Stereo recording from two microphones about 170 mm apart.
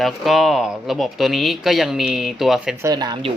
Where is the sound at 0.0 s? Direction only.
Centre (ahead or behind).